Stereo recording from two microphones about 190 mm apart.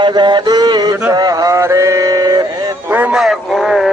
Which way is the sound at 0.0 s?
25° right (ahead or behind).